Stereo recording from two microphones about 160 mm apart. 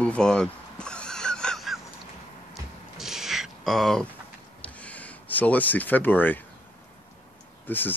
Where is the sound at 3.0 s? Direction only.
Centre (ahead or behind).